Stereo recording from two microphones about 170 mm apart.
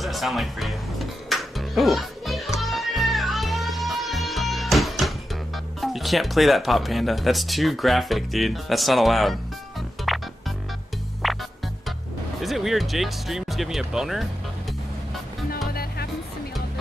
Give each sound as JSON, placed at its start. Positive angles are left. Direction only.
{"t": 0.0, "sound": "music", "side_deg": 0}
{"t": 5.8, "sound": "speech", "side_deg": 0}
{"t": 10.1, "sound": "music", "side_deg": 0}
{"t": 11.2, "sound": "music", "side_deg": 0}
{"t": 12.4, "sound": "speech", "side_deg": 0}
{"t": 15.7, "sound": "music", "side_deg": 65}